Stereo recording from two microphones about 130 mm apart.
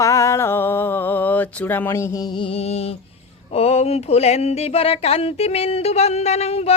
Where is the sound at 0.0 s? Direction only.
25° left (ahead or behind).